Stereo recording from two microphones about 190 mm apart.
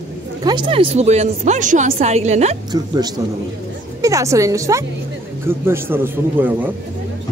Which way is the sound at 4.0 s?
15° right (ahead or behind).